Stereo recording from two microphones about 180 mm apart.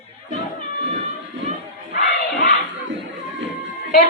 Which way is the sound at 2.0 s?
55° left (ahead or behind).